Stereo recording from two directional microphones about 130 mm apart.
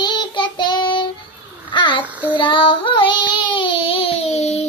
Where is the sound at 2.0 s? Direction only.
10° right (ahead or behind).